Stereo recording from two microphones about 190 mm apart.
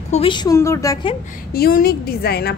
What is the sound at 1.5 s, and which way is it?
A woman's voice, 50° left (ahead or behind).